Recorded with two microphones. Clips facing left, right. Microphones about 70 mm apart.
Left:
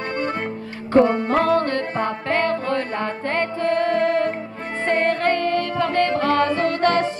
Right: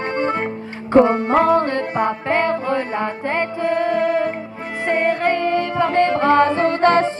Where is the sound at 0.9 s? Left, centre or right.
Right.